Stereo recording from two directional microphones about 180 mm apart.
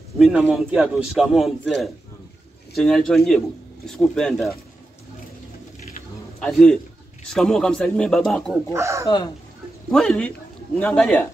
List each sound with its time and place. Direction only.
0.2 s speech: centre (ahead or behind)
2.7 s speech: 5° left (ahead or behind)
6.4 s speech: centre (ahead or behind)
8.7 s speech: 15° right (ahead or behind)
9.8 s speech: centre (ahead or behind)